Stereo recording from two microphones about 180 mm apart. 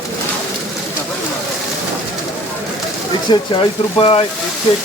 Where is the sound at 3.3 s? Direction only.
30° left (ahead or behind).